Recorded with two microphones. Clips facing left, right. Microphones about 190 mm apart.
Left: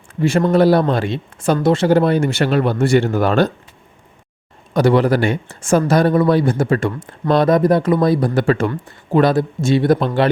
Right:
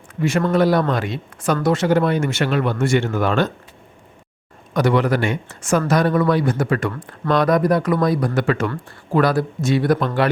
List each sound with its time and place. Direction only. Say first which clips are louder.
0.2 s speech: left 4 dB; 30° left (ahead or behind)
4.7 s speech: left 4 dB; 30° left (ahead or behind)